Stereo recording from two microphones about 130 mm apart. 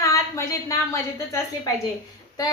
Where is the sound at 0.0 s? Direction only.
25° left (ahead or behind).